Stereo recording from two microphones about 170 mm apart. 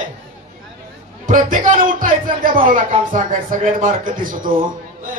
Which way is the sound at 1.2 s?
50° right (ahead or behind).